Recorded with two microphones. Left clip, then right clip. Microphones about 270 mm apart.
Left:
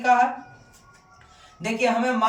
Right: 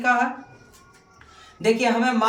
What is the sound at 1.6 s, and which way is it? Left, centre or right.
Speech, centre.